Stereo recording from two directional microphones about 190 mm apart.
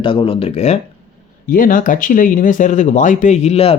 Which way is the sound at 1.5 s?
45° left (ahead or behind).